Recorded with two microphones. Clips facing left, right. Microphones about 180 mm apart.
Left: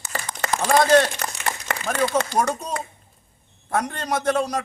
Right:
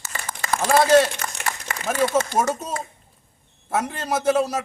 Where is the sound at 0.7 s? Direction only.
5° right (ahead or behind).